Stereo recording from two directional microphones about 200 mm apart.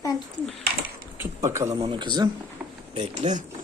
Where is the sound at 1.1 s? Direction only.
15° right (ahead or behind).